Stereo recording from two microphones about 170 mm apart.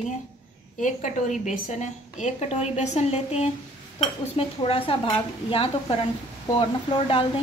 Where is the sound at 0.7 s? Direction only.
50° left (ahead or behind).